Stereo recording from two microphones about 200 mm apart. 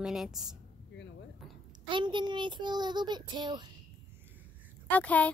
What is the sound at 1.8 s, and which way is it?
A child's voice, 25° right (ahead or behind).